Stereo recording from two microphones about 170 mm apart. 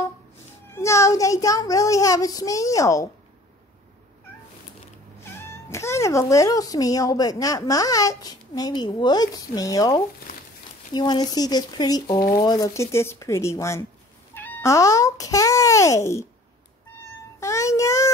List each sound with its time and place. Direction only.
0.7 s speech: 15° left (ahead or behind)
5.5 s speech: 15° left (ahead or behind)
17.4 s speech: 15° left (ahead or behind)